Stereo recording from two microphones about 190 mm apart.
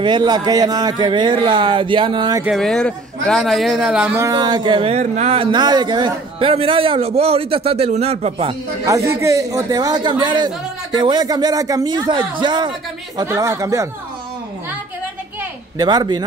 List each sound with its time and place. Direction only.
0.0 s a man's voice: 25° right (ahead or behind)
2.4 s a man's voice: centre (ahead or behind); by 8.5 s 30° right (ahead or behind)
9.1 s a man's voice: 15° right (ahead or behind)
15.8 s a man's voice: 20° right (ahead or behind)